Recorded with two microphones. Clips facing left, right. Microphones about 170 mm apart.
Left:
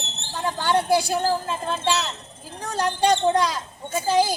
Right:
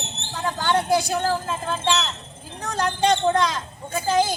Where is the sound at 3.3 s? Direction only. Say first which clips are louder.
Even; 10° left (ahead or behind).